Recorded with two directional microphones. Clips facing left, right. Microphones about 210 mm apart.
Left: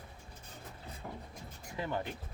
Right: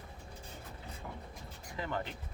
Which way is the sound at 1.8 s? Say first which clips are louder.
Left 1 dB; 15° left (ahead or behind).